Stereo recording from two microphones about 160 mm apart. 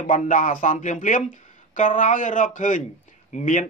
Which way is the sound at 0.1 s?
55° left (ahead or behind).